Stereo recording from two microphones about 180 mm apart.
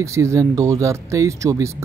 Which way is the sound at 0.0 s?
15° right (ahead or behind).